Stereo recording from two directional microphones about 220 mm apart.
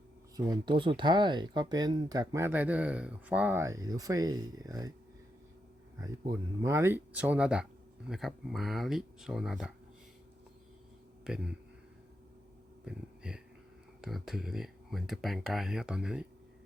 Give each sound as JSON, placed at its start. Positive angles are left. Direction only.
{"t": 0.3, "sound": "speech", "side_deg": -15}
{"t": 6.0, "sound": "speech", "side_deg": -15}
{"t": 11.2, "sound": "speech", "side_deg": -5}
{"t": 12.8, "sound": "a sound", "side_deg": -5}
{"t": 14.0, "sound": "speech", "side_deg": 0}